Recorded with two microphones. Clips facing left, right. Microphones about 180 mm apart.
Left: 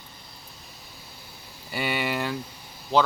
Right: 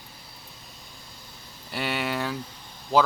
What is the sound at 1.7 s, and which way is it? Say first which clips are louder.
Speech: left 1 dB; centre (ahead or behind).